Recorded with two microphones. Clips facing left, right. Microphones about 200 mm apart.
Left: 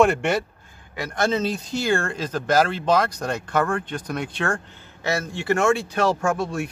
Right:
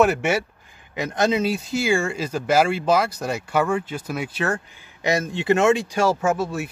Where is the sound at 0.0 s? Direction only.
5° right (ahead or behind).